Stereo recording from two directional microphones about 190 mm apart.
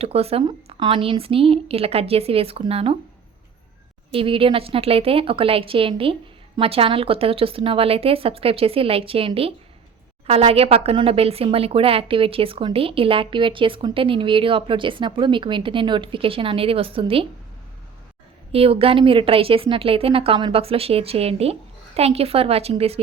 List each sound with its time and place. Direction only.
0.0 s a woman's voice: 30° right (ahead or behind)
4.1 s speech: 30° right (ahead or behind)
18.5 s a woman's voice: 30° right (ahead or behind)